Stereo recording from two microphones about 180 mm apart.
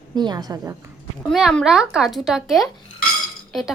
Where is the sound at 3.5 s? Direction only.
Centre (ahead or behind).